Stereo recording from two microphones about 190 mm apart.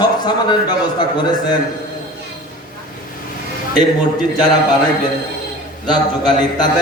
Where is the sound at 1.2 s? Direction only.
20° left (ahead or behind).